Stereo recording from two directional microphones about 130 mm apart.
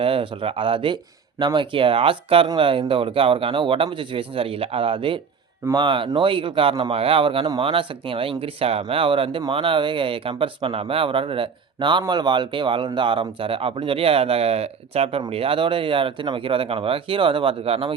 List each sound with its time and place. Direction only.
0.0 s speech: 45° right (ahead or behind)